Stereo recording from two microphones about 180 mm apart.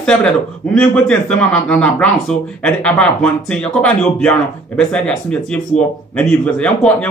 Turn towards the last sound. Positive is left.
turn(degrees=5)  # may be behind; listen again after turning